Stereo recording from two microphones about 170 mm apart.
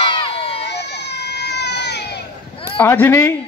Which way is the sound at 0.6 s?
85° left.